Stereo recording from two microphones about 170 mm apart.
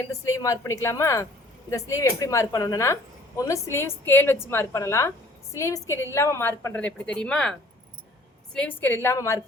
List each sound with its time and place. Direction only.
0.1 s a woman's voice: 20° left (ahead or behind)
8.5 s a woman's voice: 10° left (ahead or behind)